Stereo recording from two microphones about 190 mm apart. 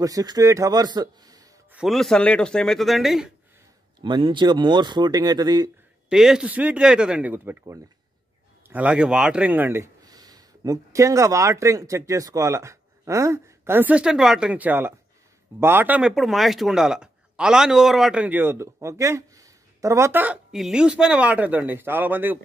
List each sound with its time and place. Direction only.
0.0 s speech: 20° right (ahead or behind)
1.7 s speech: 5° right (ahead or behind)
4.0 s speech: 25° right (ahead or behind)
6.0 s speech: 5° right (ahead or behind)